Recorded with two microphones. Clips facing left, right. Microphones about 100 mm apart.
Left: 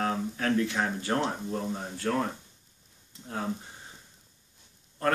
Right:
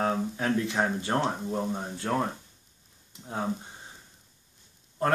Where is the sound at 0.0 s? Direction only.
20° right (ahead or behind).